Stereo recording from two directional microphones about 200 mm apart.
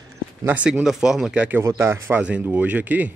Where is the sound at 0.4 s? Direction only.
10° right (ahead or behind).